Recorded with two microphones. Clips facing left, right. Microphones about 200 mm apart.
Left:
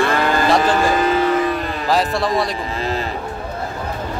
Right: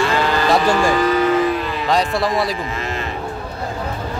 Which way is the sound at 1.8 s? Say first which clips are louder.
Even; centre (ahead or behind).